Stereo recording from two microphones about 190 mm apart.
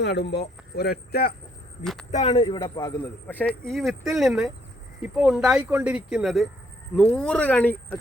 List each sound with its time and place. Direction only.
0.0 s speech: 60° left (ahead or behind)
1.8 s speech: centre (ahead or behind)
2.0 s speech: 35° left (ahead or behind); by 7.9 s 10° left (ahead or behind)